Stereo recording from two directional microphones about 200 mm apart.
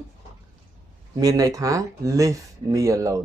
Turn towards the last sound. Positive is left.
turn(degrees=-15)  # may be behind; listen again after turning